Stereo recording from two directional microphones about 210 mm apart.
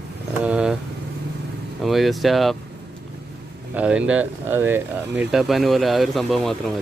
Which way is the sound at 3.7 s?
5° right (ahead or behind).